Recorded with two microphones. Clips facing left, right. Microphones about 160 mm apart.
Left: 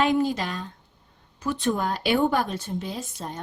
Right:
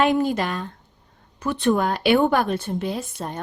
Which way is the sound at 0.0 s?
60° right (ahead or behind).